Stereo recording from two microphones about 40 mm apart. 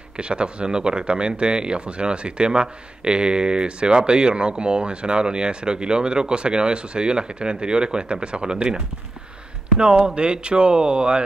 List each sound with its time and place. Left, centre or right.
0.2 s speech: right